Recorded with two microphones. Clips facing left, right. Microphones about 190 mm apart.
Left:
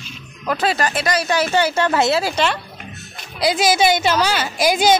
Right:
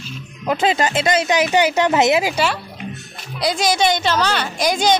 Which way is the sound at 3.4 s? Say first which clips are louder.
Left 2 dB; 5° left (ahead or behind).